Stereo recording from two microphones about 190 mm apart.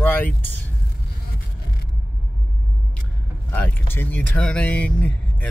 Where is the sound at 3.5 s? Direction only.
10° left (ahead or behind).